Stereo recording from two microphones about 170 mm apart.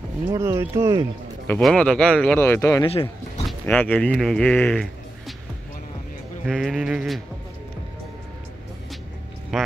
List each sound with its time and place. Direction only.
0.3 s speech: 15° right (ahead or behind)
1.6 s speech: 5° left (ahead or behind)
2.9 s speech: 35° left (ahead or behind)
3.4 s speech: 10° left (ahead or behind)
6.4 s speech: centre (ahead or behind)
9.5 s speech: centre (ahead or behind)